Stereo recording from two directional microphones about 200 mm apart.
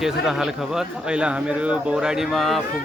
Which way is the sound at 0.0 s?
Centre (ahead or behind).